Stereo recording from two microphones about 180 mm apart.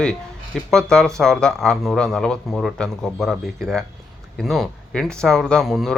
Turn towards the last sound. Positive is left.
turn(degrees=0)  # may be behind; listen again after turning